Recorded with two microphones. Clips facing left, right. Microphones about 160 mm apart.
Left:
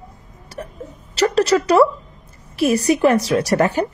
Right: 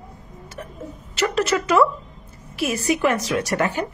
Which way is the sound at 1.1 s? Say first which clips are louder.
Left 5 dB; 35° left (ahead or behind).